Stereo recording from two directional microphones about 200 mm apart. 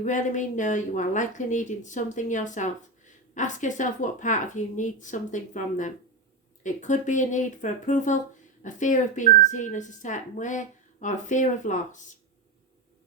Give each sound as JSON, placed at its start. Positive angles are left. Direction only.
{"t": 0.0, "sound": "speech", "side_deg": 40}